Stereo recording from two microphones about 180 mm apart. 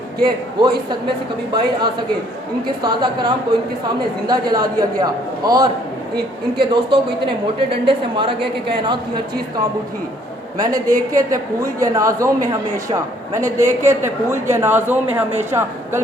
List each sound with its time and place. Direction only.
0.2 s a man's voice: 25° right (ahead or behind)
10.9 s a woman's voice: 20° right (ahead or behind)